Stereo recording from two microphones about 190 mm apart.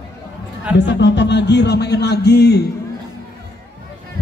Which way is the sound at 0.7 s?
65° left (ahead or behind).